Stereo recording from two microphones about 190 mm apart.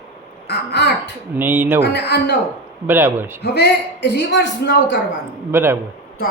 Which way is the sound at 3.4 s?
60° left (ahead or behind).